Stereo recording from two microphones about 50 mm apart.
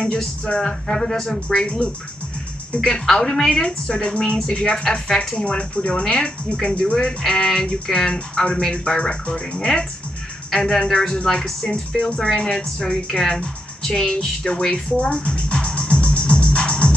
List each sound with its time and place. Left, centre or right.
0.0 s speech: centre
3.6 s a woman's voice: centre
15.0 s music: centre